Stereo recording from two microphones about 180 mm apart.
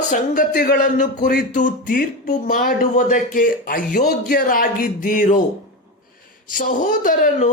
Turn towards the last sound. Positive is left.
turn(degrees=50)  # may be behind; listen again after turning